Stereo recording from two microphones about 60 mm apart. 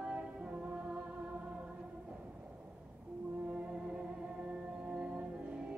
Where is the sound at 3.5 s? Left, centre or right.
Centre.